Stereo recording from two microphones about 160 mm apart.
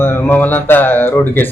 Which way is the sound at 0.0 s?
15° left (ahead or behind).